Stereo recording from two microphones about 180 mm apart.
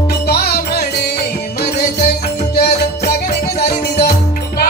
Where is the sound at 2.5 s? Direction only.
60° left (ahead or behind).